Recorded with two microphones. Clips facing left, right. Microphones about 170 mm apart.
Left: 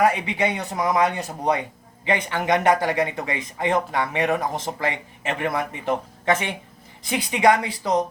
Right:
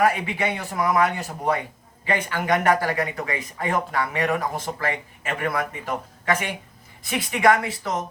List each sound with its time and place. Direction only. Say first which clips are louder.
0.0 s a man's voice: left 1 dB; 20° left (ahead or behind)